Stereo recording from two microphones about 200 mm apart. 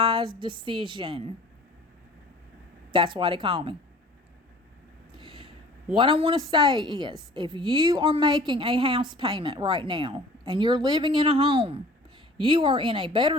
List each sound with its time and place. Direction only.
0.2 s a woman's voice: 25° right (ahead or behind)
2.9 s a woman's voice: 25° right (ahead or behind)
5.1 s vehicle: 25° right (ahead or behind)
5.9 s a woman's voice: 25° right (ahead or behind)